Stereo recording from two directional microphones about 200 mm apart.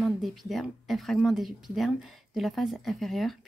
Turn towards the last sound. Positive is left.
turn(degrees=0)  # may be behind; listen again after turning